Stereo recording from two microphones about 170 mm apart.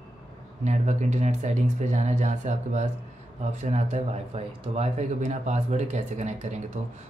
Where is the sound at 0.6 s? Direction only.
45° right (ahead or behind).